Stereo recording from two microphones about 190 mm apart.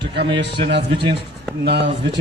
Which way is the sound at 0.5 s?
60° right (ahead or behind).